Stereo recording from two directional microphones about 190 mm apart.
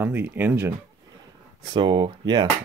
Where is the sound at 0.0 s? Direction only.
10° right (ahead or behind).